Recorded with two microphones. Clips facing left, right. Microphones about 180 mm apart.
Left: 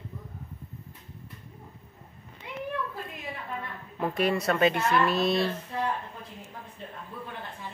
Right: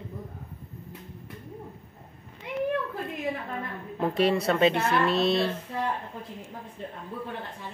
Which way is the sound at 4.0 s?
25° right (ahead or behind).